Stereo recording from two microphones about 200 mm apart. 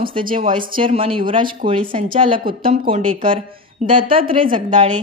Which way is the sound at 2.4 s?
45° right (ahead or behind).